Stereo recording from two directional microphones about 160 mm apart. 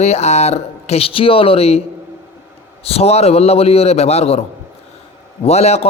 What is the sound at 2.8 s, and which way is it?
Mantra, 40° left (ahead or behind).